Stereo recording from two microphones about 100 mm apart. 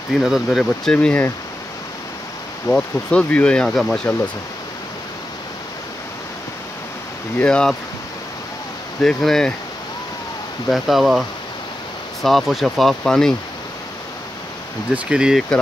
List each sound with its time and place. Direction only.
0.2 s speech: centre (ahead or behind)
0.9 s speech: 15° left (ahead or behind)
2.7 s speech: 10° left (ahead or behind)
7.3 s speech: 10° left (ahead or behind)
9.0 s speech: 5° left (ahead or behind)
10.7 s speech: centre (ahead or behind)
15.0 s speech: 10° right (ahead or behind)